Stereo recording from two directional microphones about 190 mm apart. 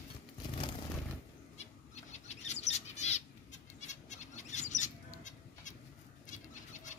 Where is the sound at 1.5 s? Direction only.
35° left (ahead or behind).